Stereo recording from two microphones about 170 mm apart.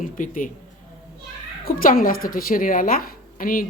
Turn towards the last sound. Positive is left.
turn(degrees=55)  # may be behind; listen again after turning